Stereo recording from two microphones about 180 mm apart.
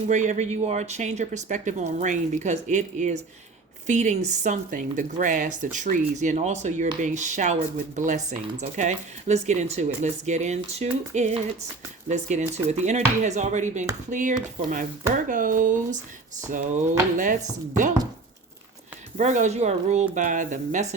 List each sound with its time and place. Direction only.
0.1 s speech: 40° right (ahead or behind)
19.1 s speech: 40° right (ahead or behind)